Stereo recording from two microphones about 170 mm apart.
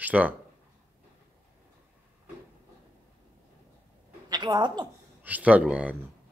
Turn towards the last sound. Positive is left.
turn(degrees=-10)  # may be behind; listen again after turning